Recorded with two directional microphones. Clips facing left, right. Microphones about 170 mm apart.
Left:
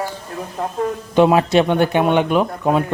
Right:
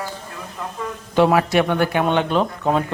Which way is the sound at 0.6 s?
45° left (ahead or behind).